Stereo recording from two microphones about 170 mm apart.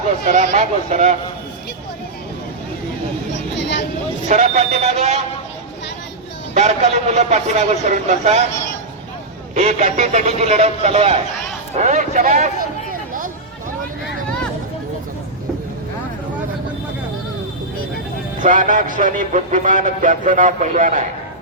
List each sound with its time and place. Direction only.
0.3 s a man's voice: 45° right (ahead or behind)
3.5 s vehicle: 90° left
4.3 s a man's voice: 40° right (ahead or behind)
6.5 s a man's voice: 40° right (ahead or behind)
9.6 s a man's voice: 40° right (ahead or behind)
11.8 s a sound: 45° right (ahead or behind)
18.3 s a man's voice: 50° right (ahead or behind)